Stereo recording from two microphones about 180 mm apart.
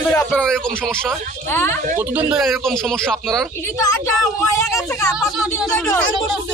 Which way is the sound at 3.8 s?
15° left (ahead or behind).